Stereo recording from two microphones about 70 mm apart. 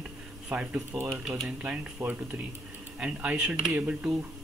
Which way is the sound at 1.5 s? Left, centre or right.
Centre.